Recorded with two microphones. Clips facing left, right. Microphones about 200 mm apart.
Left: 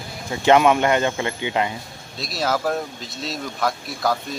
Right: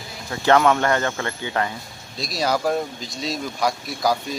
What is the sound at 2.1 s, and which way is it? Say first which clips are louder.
Speech: right 1 dB; 5° left (ahead or behind).